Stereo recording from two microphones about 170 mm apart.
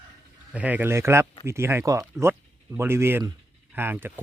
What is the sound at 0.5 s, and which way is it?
Speech, 10° right (ahead or behind).